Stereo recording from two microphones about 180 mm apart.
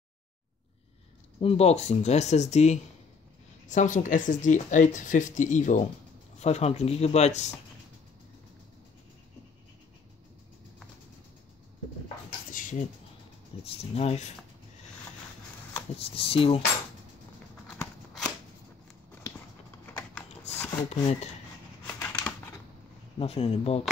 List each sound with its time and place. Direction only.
1.4 s speech: 35° left (ahead or behind)
12.3 s a sound: 50° left (ahead or behind)
13.7 s speech: 35° left (ahead or behind)
16.0 s speech: 30° left (ahead or behind)
19.9 s shuffling cards: 5° left (ahead or behind)
20.5 s a sound: 10° left (ahead or behind)
20.9 s speech: 35° left (ahead or behind)
21.8 s a sound: 10° left (ahead or behind)
23.1 s speech: 35° left (ahead or behind)